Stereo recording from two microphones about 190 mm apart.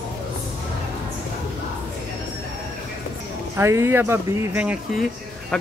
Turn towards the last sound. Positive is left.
turn(degrees=-5)  # may be behind; listen again after turning